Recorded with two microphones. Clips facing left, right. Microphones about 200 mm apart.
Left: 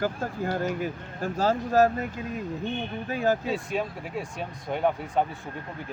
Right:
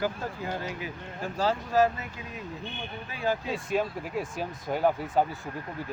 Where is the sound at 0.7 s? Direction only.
45° left (ahead or behind).